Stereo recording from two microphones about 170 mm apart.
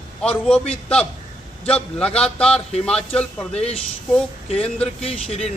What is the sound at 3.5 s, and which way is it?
Speech, 40° left (ahead or behind).